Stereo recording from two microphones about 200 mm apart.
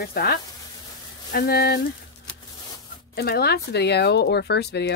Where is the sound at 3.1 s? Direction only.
50° left (ahead or behind).